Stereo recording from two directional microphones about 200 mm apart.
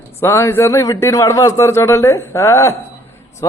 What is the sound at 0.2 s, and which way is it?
A man's voice, 15° left (ahead or behind).